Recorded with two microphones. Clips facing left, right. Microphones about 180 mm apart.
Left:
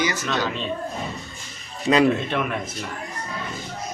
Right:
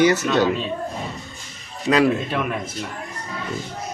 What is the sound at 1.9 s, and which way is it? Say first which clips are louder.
Speech: even; centre (ahead or behind).